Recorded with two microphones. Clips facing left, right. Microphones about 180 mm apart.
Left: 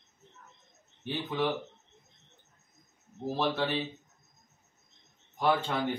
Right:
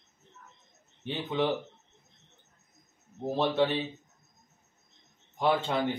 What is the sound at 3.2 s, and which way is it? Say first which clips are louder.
Speech: right 2 dB; 25° right (ahead or behind).